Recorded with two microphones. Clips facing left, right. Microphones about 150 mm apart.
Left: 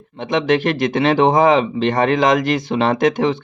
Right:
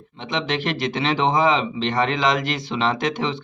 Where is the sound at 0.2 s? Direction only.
50° left (ahead or behind).